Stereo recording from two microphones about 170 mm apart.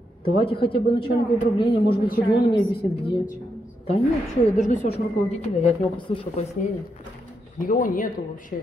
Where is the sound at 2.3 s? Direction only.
30° left (ahead or behind).